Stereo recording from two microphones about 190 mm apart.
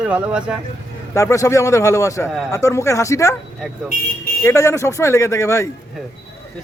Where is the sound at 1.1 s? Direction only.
15° left (ahead or behind).